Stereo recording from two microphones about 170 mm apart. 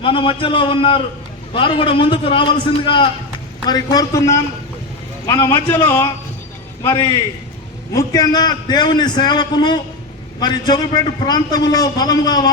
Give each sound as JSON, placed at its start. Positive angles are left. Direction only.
{"t": 0.0, "sound": "a man's voice", "side_deg": 30}